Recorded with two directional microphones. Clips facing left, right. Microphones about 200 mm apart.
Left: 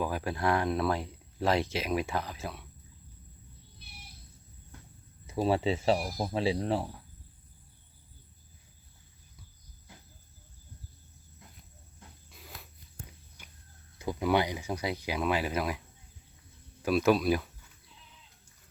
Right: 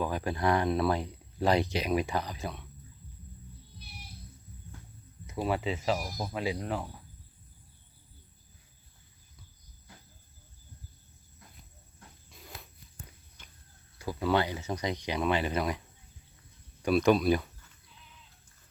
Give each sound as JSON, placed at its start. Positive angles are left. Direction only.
{"t": 0.0, "sound": "speech", "side_deg": 5}
{"t": 5.2, "sound": "speech", "side_deg": 30}
{"t": 12.3, "sound": "a sound", "side_deg": 0}
{"t": 14.0, "sound": "speech", "side_deg": 15}
{"t": 16.8, "sound": "speech", "side_deg": 0}